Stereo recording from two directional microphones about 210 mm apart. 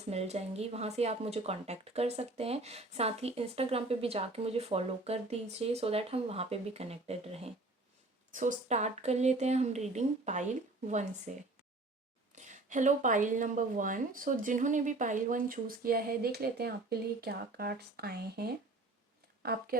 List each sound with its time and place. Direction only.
0.0 s a woman's voice: 30° right (ahead or behind); by 19.7 s 45° right (ahead or behind)